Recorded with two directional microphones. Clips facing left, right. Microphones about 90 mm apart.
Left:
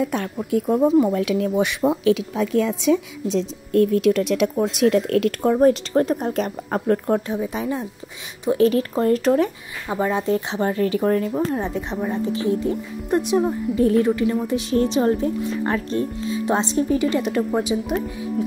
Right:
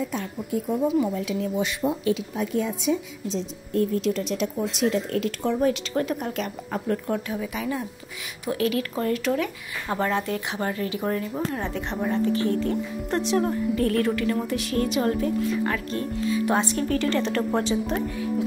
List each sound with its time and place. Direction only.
0.0 s speech: 60° left (ahead or behind)
0.7 s speech: 40° left (ahead or behind)
1.1 s speech: 70° left (ahead or behind)
5.4 s speech: 45° left (ahead or behind)
9.8 s speech: 10° left (ahead or behind)
10.2 s speech: 25° left (ahead or behind)
10.8 s speech: 40° left (ahead or behind)
11.3 s speech: 20° left (ahead or behind)